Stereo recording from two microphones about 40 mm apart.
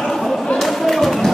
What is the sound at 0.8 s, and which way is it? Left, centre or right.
Music, centre.